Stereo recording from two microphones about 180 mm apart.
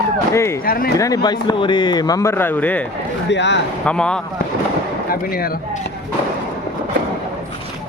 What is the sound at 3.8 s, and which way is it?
Speech, 5° left (ahead or behind).